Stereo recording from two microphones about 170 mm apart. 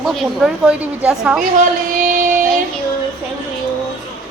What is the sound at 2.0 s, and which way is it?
Music, 50° right (ahead or behind).